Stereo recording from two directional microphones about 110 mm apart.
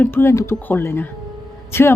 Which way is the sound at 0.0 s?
20° left (ahead or behind).